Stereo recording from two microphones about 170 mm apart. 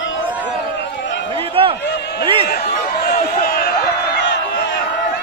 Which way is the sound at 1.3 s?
30° right (ahead or behind).